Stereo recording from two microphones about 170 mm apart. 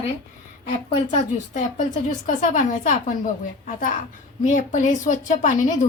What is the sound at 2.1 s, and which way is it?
Speech, 50° left (ahead or behind).